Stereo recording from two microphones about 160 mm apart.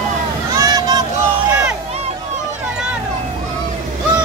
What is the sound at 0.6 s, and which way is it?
Vehicle, 25° right (ahead or behind).